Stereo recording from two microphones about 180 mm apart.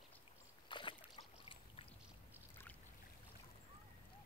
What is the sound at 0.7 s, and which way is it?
Boat, 25° left (ahead or behind).